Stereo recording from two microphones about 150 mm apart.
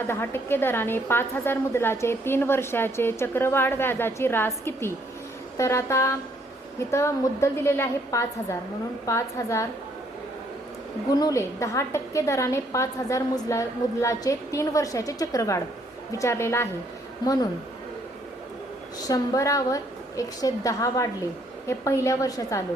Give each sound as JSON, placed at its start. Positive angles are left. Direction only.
{"t": 0.1, "sound": "a woman's voice", "side_deg": 15}
{"t": 11.1, "sound": "a woman's voice", "side_deg": 25}
{"t": 18.9, "sound": "a woman's voice", "side_deg": 25}